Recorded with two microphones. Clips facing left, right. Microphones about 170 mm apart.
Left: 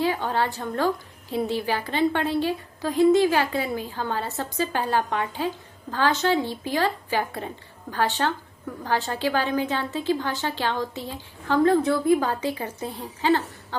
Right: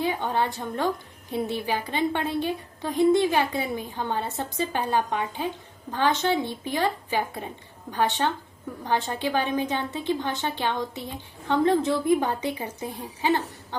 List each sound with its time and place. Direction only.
0.0 s a woman's voice: 15° right (ahead or behind)